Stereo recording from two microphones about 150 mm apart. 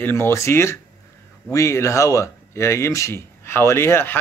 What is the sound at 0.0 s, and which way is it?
Speech, 15° left (ahead or behind).